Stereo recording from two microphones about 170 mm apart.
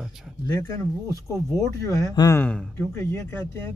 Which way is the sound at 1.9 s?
20° left (ahead or behind).